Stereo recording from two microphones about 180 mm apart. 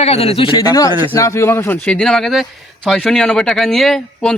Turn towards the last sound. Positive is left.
turn(degrees=0)  # may be behind; listen again after turning